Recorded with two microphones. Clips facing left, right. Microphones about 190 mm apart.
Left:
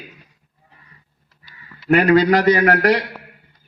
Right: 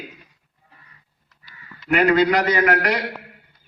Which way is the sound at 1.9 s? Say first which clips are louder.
Left 3 dB; 35° left (ahead or behind).